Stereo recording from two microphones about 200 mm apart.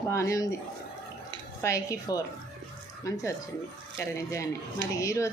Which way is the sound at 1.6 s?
15° left (ahead or behind).